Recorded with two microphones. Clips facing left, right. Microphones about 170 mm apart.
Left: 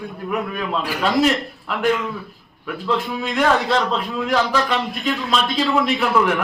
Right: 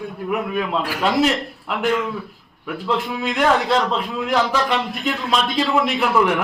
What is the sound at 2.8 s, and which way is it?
A man's voice, 15° right (ahead or behind).